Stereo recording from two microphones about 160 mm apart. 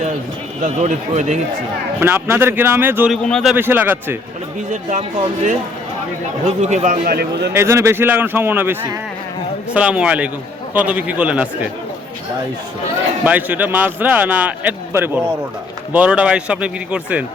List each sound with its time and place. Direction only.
0.6 s speech: 50° right (ahead or behind)
2.0 s a man's voice: 15° right (ahead or behind)
3.1 s a man's voice: centre (ahead or behind)
3.5 s a man's voice: 10° right (ahead or behind)
4.7 s speech: 50° right (ahead or behind)
6.6 s speech: 45° right (ahead or behind)
7.1 s a man's voice: 80° right
7.5 s a man's voice: 15° right (ahead or behind)
13.2 s a man's voice: 10° right (ahead or behind)